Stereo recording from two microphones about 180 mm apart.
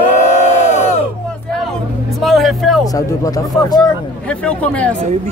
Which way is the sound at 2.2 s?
Centre (ahead or behind).